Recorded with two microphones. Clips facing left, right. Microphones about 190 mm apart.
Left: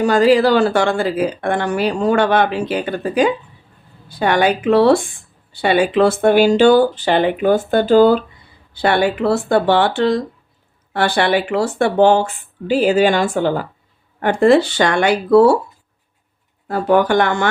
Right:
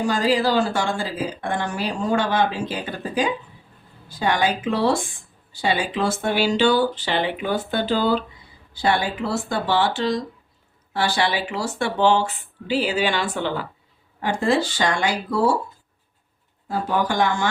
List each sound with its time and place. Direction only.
0.0 s speech: 65° left (ahead or behind); by 8.2 s 50° left (ahead or behind)
8.7 s speech: 65° left (ahead or behind); by 13.7 s 45° left (ahead or behind)
14.2 s speech: 60° left (ahead or behind)
16.6 s speech: 65° left (ahead or behind)